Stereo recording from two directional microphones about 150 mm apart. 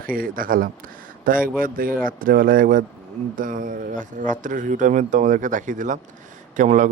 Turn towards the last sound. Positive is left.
turn(degrees=-55)  # may be behind; listen again after turning